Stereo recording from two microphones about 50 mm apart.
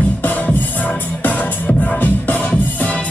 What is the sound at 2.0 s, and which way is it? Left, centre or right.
Music, left.